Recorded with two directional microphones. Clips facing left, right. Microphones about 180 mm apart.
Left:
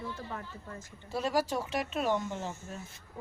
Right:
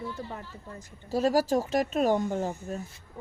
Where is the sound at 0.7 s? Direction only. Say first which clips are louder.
Right 7 dB; 40° right (ahead or behind).